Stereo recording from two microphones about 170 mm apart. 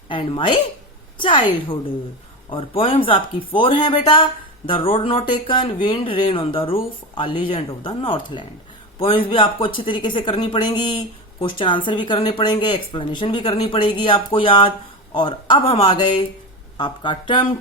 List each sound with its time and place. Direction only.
0.1 s speech: 30° left (ahead or behind)